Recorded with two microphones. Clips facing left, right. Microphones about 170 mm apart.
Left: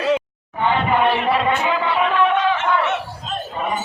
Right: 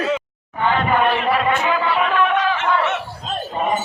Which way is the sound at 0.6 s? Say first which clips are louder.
Even; 20° left (ahead or behind).